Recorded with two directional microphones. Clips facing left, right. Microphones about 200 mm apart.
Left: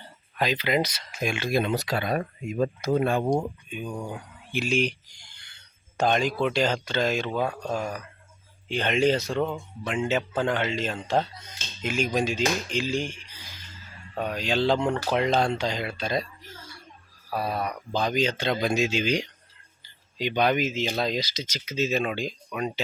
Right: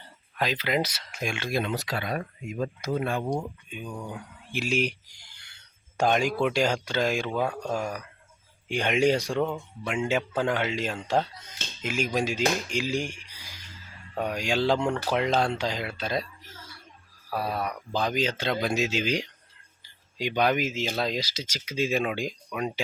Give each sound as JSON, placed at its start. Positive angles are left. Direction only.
{"t": 0.3, "sound": "speech", "side_deg": 0}
{"t": 1.2, "sound": "speech", "side_deg": 5}
{"t": 1.6, "sound": "speech", "side_deg": 20}
{"t": 2.0, "sound": "speech", "side_deg": 40}
{"t": 3.7, "sound": "speech", "side_deg": 15}
{"t": 4.5, "sound": "speech", "side_deg": -5}
{"t": 14.8, "sound": "speech", "side_deg": 5}
{"t": 17.3, "sound": "speech", "side_deg": -5}
{"t": 22.4, "sound": "speech", "side_deg": 0}